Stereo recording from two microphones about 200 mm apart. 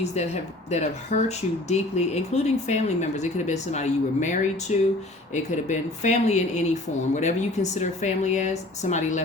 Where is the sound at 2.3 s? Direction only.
35° left (ahead or behind).